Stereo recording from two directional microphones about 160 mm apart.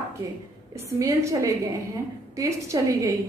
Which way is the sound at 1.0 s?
20° right (ahead or behind).